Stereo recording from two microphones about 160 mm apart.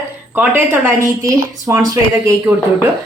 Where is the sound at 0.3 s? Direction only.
15° right (ahead or behind).